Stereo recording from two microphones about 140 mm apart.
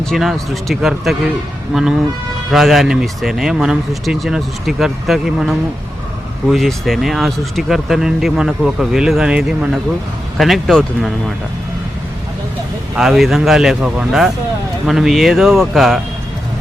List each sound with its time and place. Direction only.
0.0 s speech: centre (ahead or behind)
13.0 s speech: centre (ahead or behind)